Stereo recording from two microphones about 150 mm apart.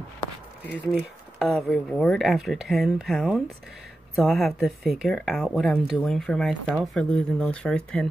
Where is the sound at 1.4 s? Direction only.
Centre (ahead or behind).